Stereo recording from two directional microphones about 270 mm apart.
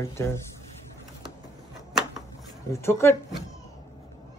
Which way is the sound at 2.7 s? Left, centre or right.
Centre.